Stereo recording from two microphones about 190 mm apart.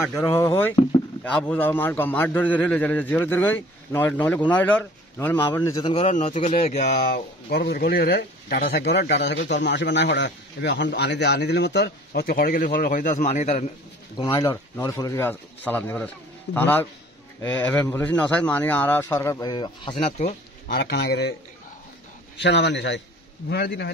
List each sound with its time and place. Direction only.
0.1 s a man's voice: 15° left (ahead or behind); by 7.1 s 35° left (ahead or behind)
7.1 s speech: 55° left (ahead or behind); by 13.7 s 40° left (ahead or behind)
14.1 s a man's voice: 20° left (ahead or behind); by 20.7 s 35° left (ahead or behind)
20.7 s speech: 60° left (ahead or behind)
22.4 s a man's voice: 65° left (ahead or behind)